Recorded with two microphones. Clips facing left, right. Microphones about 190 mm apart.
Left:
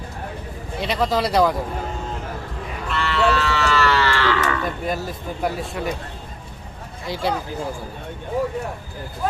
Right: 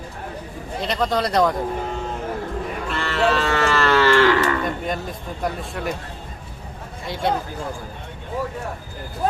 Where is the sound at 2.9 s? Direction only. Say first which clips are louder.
Left 1 dB; 45° right (ahead or behind).